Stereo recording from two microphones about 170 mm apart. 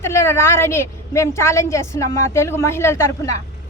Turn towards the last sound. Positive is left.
turn(degrees=15)  # may be behind; listen again after turning